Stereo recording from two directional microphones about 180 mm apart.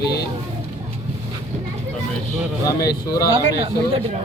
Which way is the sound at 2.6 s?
20° left (ahead or behind).